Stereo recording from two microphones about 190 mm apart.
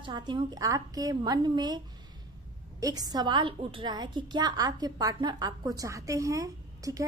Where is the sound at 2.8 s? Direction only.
20° right (ahead or behind).